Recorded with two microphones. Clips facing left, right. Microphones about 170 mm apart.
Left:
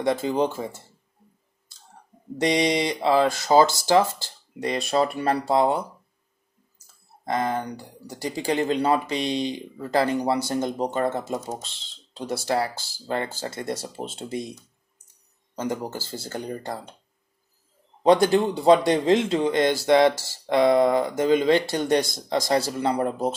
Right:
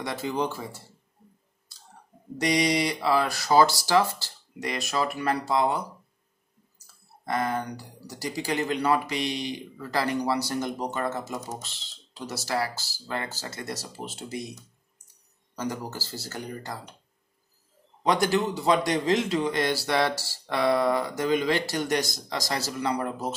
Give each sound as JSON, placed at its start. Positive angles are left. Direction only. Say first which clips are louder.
{"t": 0.0, "sound": "speech", "louder": "left 6 dB", "side_deg": 25}
{"t": 2.3, "sound": "speech", "louder": "left 3 dB", "side_deg": 25}
{"t": 7.2, "sound": "speech", "louder": "left 2 dB", "side_deg": 25}
{"t": 12.7, "sound": "speech", "louder": "left 1 dB", "side_deg": 55}
{"t": 13.0, "sound": "speech", "louder": "left 6 dB", "side_deg": 30}
{"t": 15.5, "sound": "speech", "louder": "left 4 dB", "side_deg": 20}
{"t": 18.0, "sound": "speech", "louder": "left 6 dB", "side_deg": 30}